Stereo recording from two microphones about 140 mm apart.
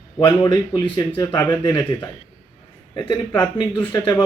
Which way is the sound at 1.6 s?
30° left (ahead or behind).